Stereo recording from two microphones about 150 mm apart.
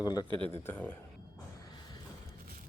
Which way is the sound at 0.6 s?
15° left (ahead or behind).